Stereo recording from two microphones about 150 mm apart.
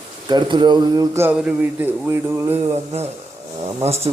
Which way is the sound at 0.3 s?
30° right (ahead or behind).